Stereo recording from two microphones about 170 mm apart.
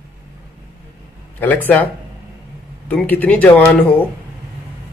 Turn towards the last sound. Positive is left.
turn(degrees=10)  # may be behind; listen again after turning